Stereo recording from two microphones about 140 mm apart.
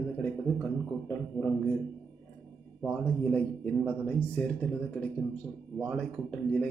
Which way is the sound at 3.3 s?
10° left (ahead or behind).